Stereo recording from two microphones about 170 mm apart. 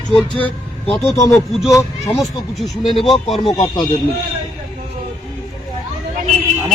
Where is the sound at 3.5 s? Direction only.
25° left (ahead or behind).